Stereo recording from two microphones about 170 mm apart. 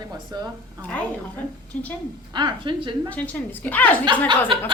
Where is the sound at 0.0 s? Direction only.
25° right (ahead or behind).